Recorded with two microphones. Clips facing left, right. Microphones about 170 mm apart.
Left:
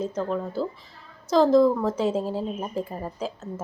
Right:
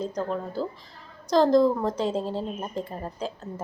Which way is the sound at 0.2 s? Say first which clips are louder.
Left 2 dB; centre (ahead or behind).